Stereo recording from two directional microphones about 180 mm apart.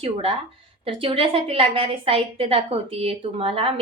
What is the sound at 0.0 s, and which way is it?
A woman's voice, 30° right (ahead or behind).